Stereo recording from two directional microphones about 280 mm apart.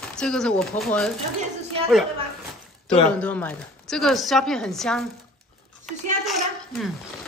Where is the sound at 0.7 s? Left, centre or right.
Left.